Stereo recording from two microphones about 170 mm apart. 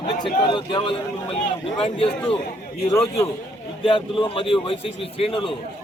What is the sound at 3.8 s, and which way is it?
A man's voice, 30° left (ahead or behind).